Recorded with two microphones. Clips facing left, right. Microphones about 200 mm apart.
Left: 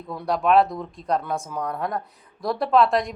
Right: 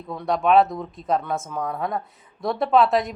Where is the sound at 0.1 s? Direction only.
Centre (ahead or behind).